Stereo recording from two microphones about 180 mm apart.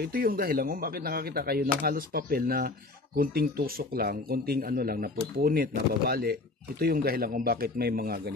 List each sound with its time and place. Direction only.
0.0 s speech: 55° right (ahead or behind)